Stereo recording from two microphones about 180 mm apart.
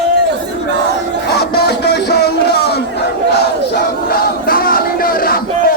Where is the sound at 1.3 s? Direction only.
65° left (ahead or behind).